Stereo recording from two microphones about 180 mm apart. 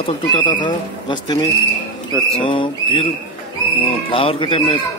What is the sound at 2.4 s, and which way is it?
Speech, 30° left (ahead or behind).